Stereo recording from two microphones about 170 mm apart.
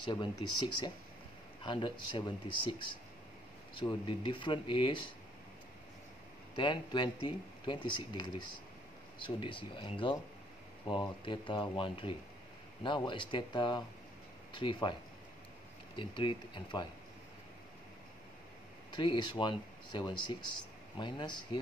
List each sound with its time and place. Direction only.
0.1 s speech: 25° left (ahead or behind)
6.5 s speech: 25° left (ahead or behind)
16.0 s speech: 30° left (ahead or behind)
18.9 s speech: 30° left (ahead or behind)